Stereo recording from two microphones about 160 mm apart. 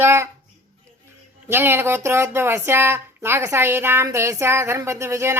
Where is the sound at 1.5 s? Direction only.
15° right (ahead or behind).